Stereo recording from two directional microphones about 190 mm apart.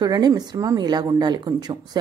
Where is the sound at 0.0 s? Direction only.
20° right (ahead or behind).